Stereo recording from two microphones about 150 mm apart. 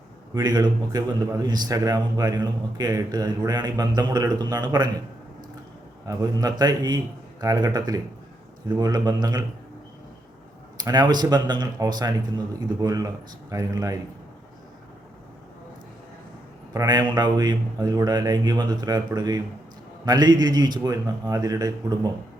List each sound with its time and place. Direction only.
0.3 s a man's voice: 25° right (ahead or behind)
6.1 s a man's voice: 25° right (ahead or behind)
10.8 s a man's voice: 25° right (ahead or behind)
16.7 s a man's voice: 25° right (ahead or behind)